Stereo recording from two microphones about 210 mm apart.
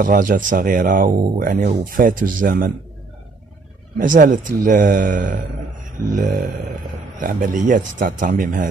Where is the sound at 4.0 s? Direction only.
40° right (ahead or behind).